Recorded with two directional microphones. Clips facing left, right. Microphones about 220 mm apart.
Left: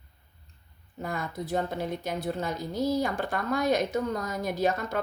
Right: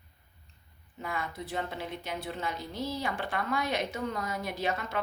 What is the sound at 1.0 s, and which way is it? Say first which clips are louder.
Speech: left 3 dB; 40° left (ahead or behind).